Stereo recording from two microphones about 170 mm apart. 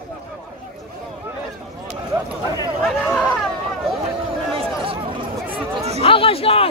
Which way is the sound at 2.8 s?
Centre (ahead or behind).